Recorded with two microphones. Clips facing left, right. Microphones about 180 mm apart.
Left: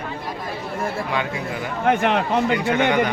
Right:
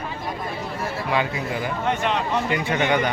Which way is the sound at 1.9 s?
55° left (ahead or behind).